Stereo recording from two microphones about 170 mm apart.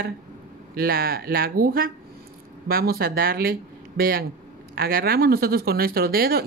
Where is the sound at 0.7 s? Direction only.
60° right (ahead or behind).